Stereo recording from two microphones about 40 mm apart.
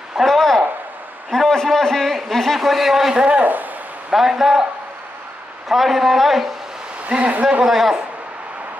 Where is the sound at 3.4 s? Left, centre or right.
Right.